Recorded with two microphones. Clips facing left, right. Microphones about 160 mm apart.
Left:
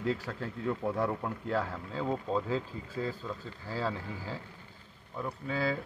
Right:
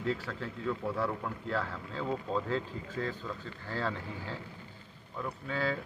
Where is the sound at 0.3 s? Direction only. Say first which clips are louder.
Left 1 dB; 20° left (ahead or behind).